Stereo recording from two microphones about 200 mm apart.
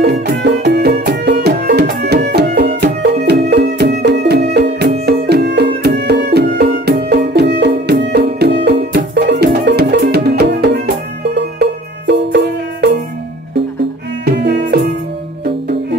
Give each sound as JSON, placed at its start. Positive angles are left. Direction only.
{"t": 0.0, "sound": "music", "side_deg": -55}
{"t": 14.2, "sound": "music", "side_deg": -55}